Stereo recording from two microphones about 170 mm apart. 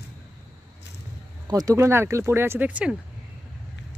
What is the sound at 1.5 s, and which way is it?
Speech, 20° right (ahead or behind).